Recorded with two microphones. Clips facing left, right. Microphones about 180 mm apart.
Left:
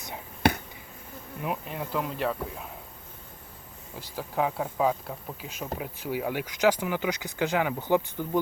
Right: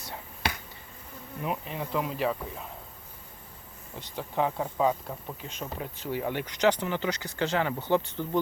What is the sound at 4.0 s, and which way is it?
Speech, 5° left (ahead or behind).